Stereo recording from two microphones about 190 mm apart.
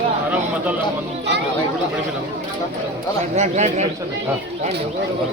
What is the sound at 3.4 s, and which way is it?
Speech, 35° right (ahead or behind).